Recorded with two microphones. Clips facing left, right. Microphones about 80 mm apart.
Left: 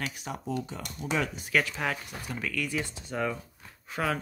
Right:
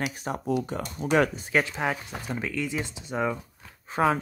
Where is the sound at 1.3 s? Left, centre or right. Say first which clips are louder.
Right 2 dB; right.